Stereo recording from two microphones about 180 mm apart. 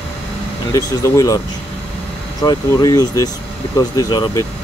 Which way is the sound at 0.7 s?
20° left (ahead or behind).